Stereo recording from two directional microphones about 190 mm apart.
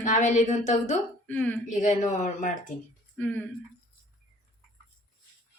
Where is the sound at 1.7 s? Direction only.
40° left (ahead or behind).